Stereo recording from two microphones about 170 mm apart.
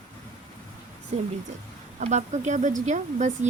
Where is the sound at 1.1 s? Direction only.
35° right (ahead or behind).